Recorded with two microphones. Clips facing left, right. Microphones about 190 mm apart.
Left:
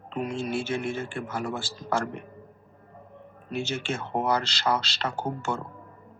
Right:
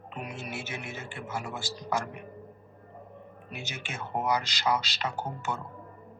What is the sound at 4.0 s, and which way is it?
Speech, 15° right (ahead or behind).